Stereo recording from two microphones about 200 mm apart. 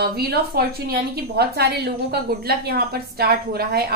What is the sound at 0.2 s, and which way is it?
A woman's voice, 50° right (ahead or behind).